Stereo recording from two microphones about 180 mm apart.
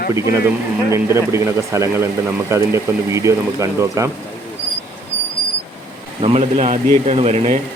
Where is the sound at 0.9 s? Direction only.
15° right (ahead or behind).